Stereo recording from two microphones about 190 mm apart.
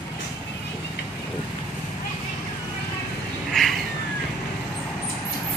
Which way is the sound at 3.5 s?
Centre (ahead or behind).